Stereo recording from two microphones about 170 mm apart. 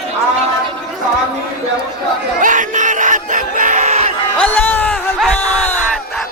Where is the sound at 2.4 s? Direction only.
50° right (ahead or behind).